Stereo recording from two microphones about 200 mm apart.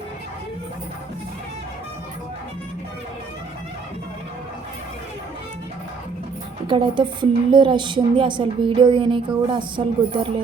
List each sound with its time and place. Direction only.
6.7 s a woman's voice: 25° right (ahead or behind)